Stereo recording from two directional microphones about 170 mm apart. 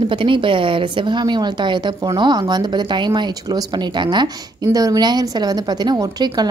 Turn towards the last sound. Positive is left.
turn(degrees=-25)  # may be behind; listen again after turning